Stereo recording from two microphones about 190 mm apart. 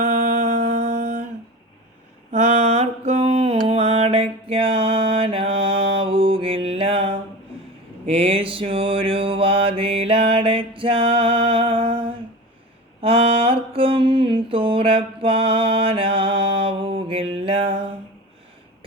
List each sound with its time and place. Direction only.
0.0 s music: 40° right (ahead or behind)
2.3 s mantra: 35° right (ahead or behind)